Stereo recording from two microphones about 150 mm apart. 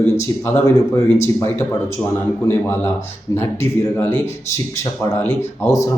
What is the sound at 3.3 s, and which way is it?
Speech, 15° left (ahead or behind).